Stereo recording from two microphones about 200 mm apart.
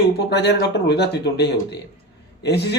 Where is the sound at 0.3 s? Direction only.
55° left (ahead or behind).